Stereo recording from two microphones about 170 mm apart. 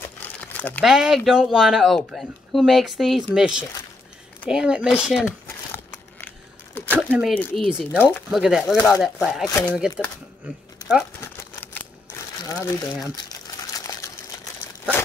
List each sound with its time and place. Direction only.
0.2 s crumpling: 10° left (ahead or behind)
0.8 s speech: 5° right (ahead or behind)
5.9 s a sound: 10° left (ahead or behind)
7.1 s speech: 5° right (ahead or behind)
7.3 s speech: 5° left (ahead or behind)
9.5 s speech: 20° left (ahead or behind)
9.8 s speech: 5° right (ahead or behind)
11.1 s crumpling: 10° left (ahead or behind)
12.4 s speech: 20° left (ahead or behind)
13.3 s a sound: 20° left (ahead or behind)